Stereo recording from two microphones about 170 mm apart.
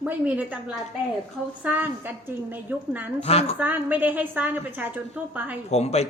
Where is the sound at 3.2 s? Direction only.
35° left (ahead or behind).